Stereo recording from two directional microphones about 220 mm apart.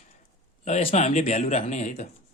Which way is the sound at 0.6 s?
30° left (ahead or behind).